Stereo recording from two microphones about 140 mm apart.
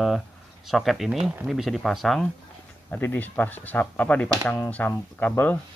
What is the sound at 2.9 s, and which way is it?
Speech, 10° left (ahead or behind).